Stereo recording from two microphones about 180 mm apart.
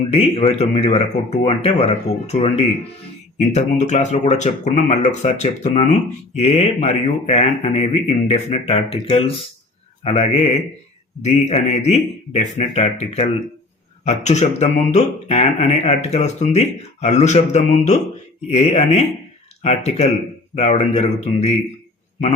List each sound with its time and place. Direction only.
0.1 s speech: 35° left (ahead or behind)
11.7 s speech: 35° left (ahead or behind)